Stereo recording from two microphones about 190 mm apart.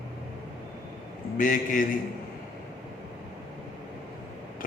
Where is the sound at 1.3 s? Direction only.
45° left (ahead or behind).